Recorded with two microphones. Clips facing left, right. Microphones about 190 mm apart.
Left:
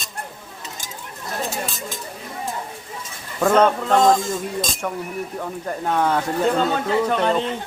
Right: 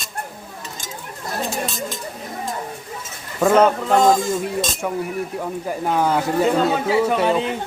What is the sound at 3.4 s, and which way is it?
Speech, 5° right (ahead or behind).